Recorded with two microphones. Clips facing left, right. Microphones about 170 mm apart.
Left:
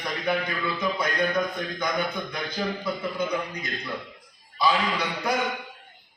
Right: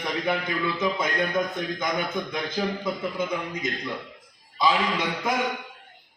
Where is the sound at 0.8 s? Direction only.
20° right (ahead or behind).